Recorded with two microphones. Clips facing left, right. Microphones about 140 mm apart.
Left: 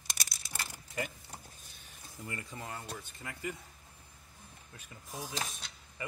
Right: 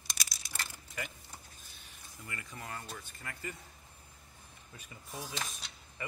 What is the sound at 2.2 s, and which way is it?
Speech, 30° left (ahead or behind).